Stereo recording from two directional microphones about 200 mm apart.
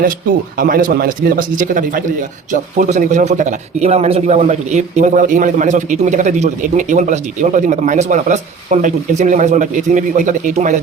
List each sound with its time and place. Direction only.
0.5 s a man's voice: 45° right (ahead or behind)